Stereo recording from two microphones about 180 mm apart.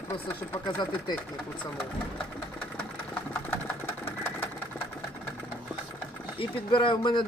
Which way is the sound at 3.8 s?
10° left (ahead or behind).